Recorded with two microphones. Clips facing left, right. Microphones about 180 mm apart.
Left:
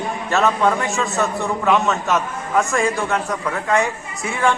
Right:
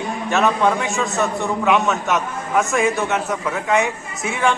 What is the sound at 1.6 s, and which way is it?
Speech, 15° right (ahead or behind).